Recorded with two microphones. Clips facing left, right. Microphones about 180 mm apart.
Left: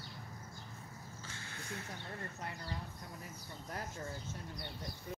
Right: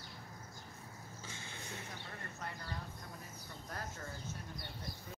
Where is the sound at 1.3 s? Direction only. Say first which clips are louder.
Even; 20° right (ahead or behind).